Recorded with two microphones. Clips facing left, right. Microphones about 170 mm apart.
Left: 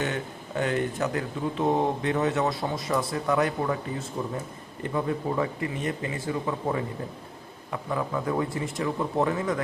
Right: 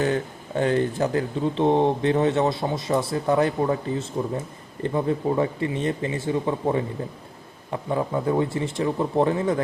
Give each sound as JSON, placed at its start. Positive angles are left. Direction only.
{"t": 0.0, "sound": "speech", "side_deg": -35}